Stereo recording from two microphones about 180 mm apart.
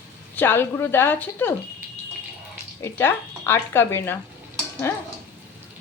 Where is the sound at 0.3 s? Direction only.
10° left (ahead or behind).